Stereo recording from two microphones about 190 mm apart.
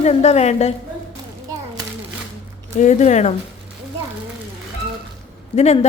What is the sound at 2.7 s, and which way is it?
Speech, 40° left (ahead or behind).